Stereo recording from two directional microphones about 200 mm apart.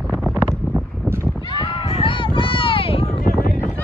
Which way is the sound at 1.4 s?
25° left (ahead or behind).